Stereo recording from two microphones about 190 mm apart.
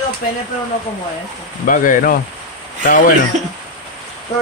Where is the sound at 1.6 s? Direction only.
45° left (ahead or behind).